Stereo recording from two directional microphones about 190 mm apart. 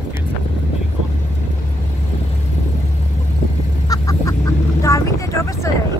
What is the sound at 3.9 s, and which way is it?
Duck, 15° left (ahead or behind).